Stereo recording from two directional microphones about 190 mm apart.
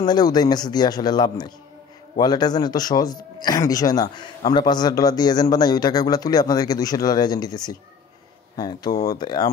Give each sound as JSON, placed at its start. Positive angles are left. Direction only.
{"t": 0.0, "sound": "speech", "side_deg": 20}